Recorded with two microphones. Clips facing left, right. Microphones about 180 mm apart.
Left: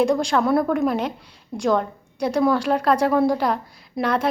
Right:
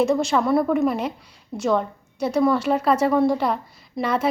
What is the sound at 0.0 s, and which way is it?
A woman's voice, 5° right (ahead or behind).